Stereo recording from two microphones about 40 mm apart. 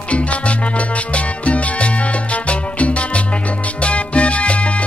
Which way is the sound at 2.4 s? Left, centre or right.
Left.